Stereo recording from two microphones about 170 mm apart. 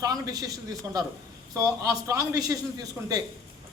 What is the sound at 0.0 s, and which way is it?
Speech, 20° right (ahead or behind).